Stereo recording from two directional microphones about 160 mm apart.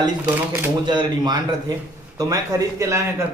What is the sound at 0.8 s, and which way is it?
A man's voice, 25° right (ahead or behind).